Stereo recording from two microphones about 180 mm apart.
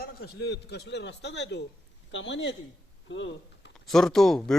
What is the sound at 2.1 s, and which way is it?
Speech, 90° left.